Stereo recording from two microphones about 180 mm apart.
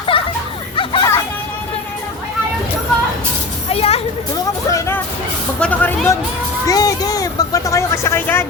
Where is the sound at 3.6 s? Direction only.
35° left (ahead or behind).